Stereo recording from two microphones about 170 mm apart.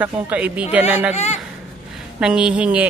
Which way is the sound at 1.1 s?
40° left (ahead or behind).